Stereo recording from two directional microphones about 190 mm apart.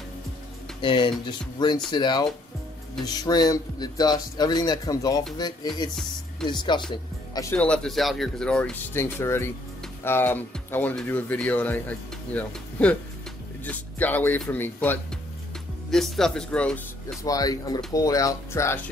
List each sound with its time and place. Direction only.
0.7 s a man's voice: 25° left (ahead or behind)
6.4 s a man's voice: 25° left (ahead or behind)
7.5 s speech: 5° left (ahead or behind)
17.2 s speech: 20° left (ahead or behind)